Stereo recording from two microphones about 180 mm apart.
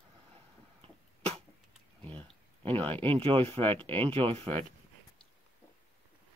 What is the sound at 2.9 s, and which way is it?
Speech, 30° right (ahead or behind).